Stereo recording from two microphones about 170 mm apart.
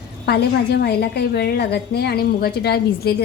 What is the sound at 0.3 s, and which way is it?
A woman's voice, 75° left (ahead or behind).